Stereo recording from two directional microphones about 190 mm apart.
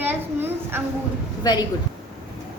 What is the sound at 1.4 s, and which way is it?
Speech, 20° left (ahead or behind).